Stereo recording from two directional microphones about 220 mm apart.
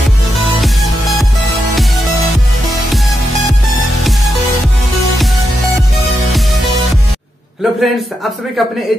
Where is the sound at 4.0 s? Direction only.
Centre (ahead or behind).